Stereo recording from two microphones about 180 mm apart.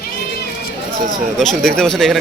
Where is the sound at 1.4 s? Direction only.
Centre (ahead or behind).